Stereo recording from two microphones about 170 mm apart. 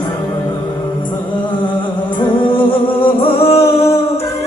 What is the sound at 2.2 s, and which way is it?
Music, 30° left (ahead or behind).